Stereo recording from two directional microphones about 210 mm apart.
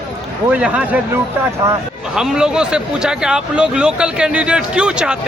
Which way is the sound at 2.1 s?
5° right (ahead or behind).